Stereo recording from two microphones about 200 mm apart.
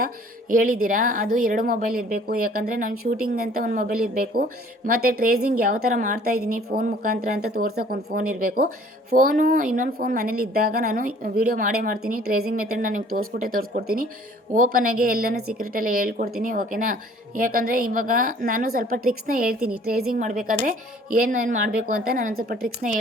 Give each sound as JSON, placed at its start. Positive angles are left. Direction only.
{"t": 0.5, "sound": "a woman's voice", "side_deg": -45}
{"t": 19.5, "sound": "a woman's voice", "side_deg": -5}
{"t": 20.1, "sound": "a woman's voice", "side_deg": -40}